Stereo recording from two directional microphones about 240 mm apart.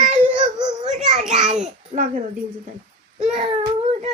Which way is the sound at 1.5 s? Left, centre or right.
Right.